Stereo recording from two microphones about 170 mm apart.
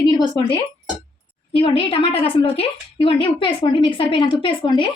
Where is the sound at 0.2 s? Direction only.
25° left (ahead or behind).